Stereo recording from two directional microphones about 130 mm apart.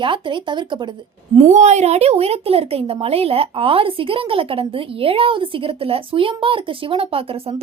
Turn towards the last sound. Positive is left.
turn(degrees=-45)  # may be behind; listen again after turning